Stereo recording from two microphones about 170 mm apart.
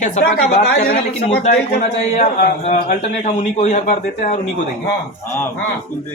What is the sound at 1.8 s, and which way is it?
Speech, 40° left (ahead or behind).